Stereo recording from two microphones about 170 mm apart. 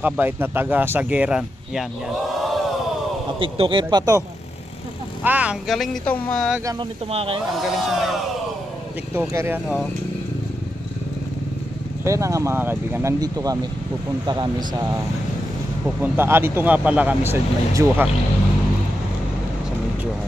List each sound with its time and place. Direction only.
0.0 s speech: 10° right (ahead or behind)
3.3 s speech: 30° right (ahead or behind)
5.2 s speech: 10° right (ahead or behind)
7.1 s speech: 35° right (ahead or behind)
7.7 s speech: centre (ahead or behind)
9.1 s speech: 15° right (ahead or behind)
12.0 s speech: 20° right (ahead or behind)
16.0 s speech: 15° right (ahead or behind)